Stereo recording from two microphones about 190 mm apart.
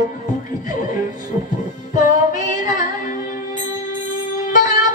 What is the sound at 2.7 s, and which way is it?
Music, 45° left (ahead or behind).